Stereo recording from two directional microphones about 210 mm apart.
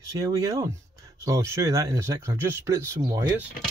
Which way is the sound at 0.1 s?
15° right (ahead or behind).